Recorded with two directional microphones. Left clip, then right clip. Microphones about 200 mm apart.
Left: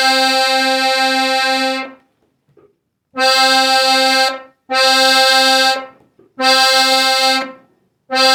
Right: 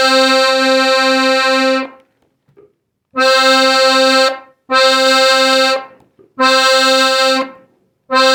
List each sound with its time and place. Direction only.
0.0 s music: 35° right (ahead or behind)
3.1 s accordion: 35° right (ahead or behind)